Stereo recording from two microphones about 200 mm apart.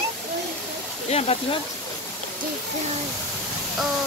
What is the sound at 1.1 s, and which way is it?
Speech, 30° left (ahead or behind).